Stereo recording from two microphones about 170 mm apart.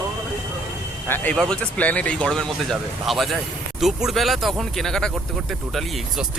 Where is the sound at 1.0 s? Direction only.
10° left (ahead or behind).